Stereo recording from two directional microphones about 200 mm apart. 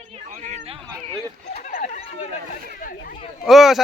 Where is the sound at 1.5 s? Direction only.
40° left (ahead or behind).